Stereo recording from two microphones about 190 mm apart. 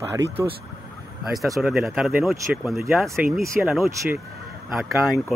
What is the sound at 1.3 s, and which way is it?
Speech, centre (ahead or behind).